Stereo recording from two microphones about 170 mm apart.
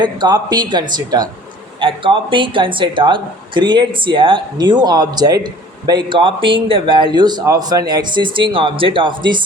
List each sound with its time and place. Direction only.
0.0 s speech: 25° right (ahead or behind)